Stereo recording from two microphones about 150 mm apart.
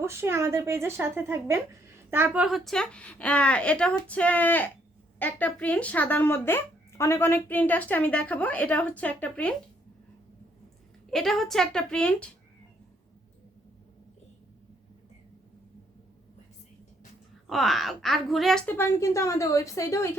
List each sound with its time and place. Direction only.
0.0 s speech: 15° right (ahead or behind); by 9.6 s 10° left (ahead or behind)
11.1 s speech: centre (ahead or behind)
17.4 s speech: centre (ahead or behind)
18.6 s a woman's voice: 15° left (ahead or behind)